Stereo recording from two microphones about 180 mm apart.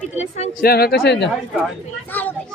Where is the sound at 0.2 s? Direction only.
40° left (ahead or behind).